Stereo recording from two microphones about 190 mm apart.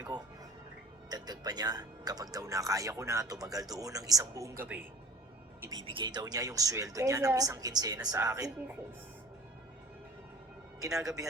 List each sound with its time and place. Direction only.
1.1 s speech: 20° right (ahead or behind)
5.6 s speech: 25° right (ahead or behind)
10.8 s speech: 15° right (ahead or behind)